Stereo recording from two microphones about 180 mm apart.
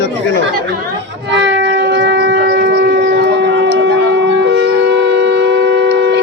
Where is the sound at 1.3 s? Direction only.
75° right (ahead or behind).